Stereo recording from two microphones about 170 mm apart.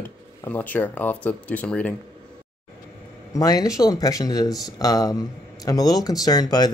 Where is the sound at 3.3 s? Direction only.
20° left (ahead or behind).